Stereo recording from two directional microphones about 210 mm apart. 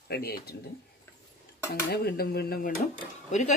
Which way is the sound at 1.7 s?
50° left (ahead or behind).